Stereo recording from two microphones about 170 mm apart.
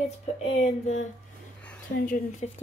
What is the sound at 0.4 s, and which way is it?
Music, 40° left (ahead or behind).